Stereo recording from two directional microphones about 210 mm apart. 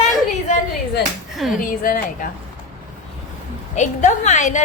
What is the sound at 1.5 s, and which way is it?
Speech, 40° left (ahead or behind).